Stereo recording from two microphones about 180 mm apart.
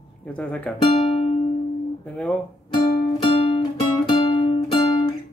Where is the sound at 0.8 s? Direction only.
30° left (ahead or behind).